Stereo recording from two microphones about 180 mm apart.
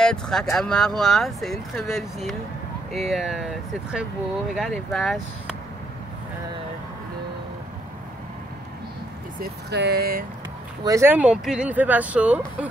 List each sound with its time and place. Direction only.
0.0 s speech: 5° left (ahead or behind)
9.4 s speech: 65° right (ahead or behind)
10.8 s speech: 15° right (ahead or behind)